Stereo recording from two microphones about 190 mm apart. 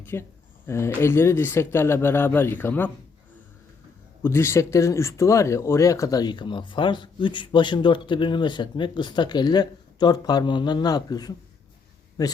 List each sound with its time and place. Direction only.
0.0 s speech: 10° left (ahead or behind)
4.2 s speech: 15° left (ahead or behind)